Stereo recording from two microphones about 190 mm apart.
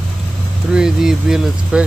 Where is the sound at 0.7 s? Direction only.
5° right (ahead or behind).